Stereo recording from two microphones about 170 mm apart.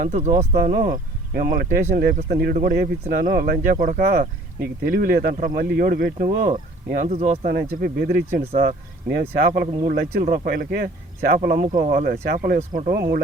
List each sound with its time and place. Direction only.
0.0 s speech: 45° right (ahead or behind)
0.5 s speech: 65° right (ahead or behind); by 7.3 s 45° right (ahead or behind)
7.4 s speech: 65° right (ahead or behind)